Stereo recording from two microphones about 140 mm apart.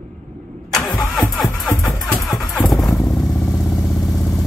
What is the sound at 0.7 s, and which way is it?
Engine starting, 5° left (ahead or behind).